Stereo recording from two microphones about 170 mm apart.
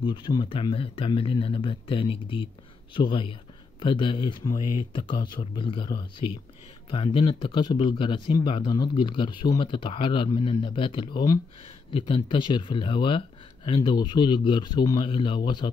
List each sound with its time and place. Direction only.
0.0 s speech: 25° left (ahead or behind)